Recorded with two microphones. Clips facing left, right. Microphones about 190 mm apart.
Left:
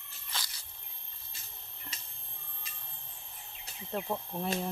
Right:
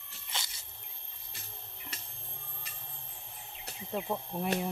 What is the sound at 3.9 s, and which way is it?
Speech, 10° right (ahead or behind).